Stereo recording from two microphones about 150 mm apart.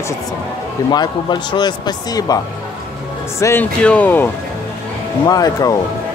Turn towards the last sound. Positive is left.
turn(degrees=25)  # may be behind; listen again after turning